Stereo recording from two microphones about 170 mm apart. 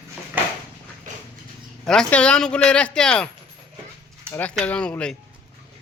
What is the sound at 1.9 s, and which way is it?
Speech, 5° left (ahead or behind).